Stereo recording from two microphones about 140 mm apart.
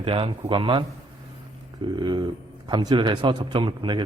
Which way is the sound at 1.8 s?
35° right (ahead or behind).